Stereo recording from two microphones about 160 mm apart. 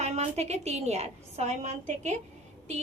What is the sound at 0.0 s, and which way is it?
A woman's voice, 45° right (ahead or behind).